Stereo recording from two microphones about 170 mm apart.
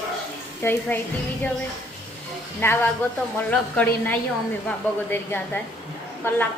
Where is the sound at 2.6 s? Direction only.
10° left (ahead or behind).